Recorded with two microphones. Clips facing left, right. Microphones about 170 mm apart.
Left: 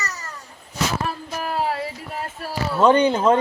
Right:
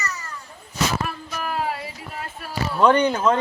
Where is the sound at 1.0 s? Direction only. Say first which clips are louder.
Left 2 dB; 35° left (ahead or behind).